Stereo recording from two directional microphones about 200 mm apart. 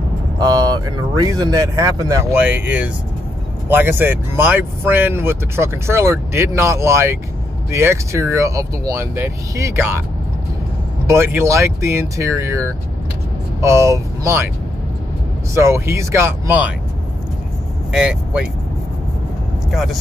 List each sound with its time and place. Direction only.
0.4 s speech: 20° right (ahead or behind)
11.1 s speech: 15° right (ahead or behind)
15.5 s speech: 15° right (ahead or behind)
17.9 s speech: 5° right (ahead or behind)
19.7 s speech: centre (ahead or behind)